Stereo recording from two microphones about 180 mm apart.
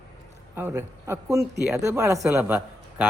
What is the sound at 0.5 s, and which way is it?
A man's voice, 10° right (ahead or behind).